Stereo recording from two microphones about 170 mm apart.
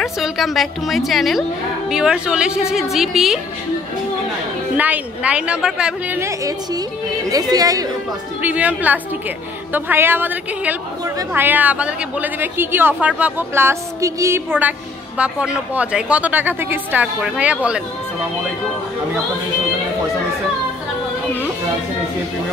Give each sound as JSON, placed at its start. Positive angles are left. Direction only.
{"t": 0.0, "sound": "a woman's voice", "side_deg": 0}
{"t": 4.7, "sound": "speech", "side_deg": -10}
{"t": 8.4, "sound": "speech", "side_deg": -10}